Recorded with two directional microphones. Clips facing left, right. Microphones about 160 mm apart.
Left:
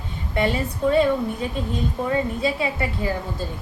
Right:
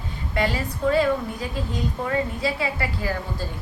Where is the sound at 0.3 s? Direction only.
25° left (ahead or behind).